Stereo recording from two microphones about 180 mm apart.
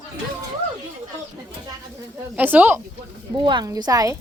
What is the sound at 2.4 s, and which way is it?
Speech, 10° right (ahead or behind).